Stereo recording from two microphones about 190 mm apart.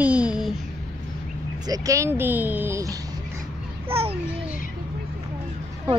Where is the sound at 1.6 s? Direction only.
20° right (ahead or behind).